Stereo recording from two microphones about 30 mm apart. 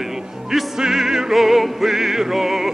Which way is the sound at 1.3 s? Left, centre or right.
Centre.